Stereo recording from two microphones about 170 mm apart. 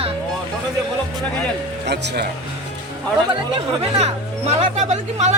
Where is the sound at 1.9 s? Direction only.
85° right.